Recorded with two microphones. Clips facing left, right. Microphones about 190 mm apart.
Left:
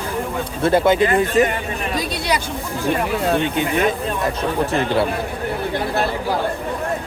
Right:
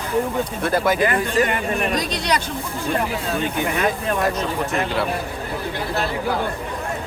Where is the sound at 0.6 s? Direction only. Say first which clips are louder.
Left 5 dB; 25° left (ahead or behind).